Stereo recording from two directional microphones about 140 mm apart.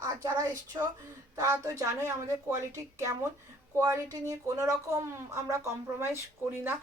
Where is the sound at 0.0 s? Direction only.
25° right (ahead or behind).